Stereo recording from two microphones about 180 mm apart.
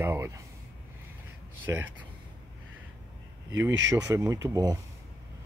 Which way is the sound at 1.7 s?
15° right (ahead or behind).